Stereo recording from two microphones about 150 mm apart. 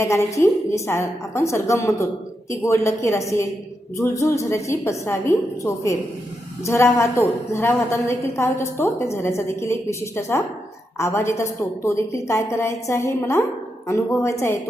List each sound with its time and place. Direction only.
0.0 s a woman's voice: 20° left (ahead or behind)